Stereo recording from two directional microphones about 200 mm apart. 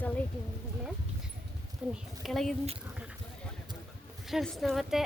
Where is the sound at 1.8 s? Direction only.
5° right (ahead or behind).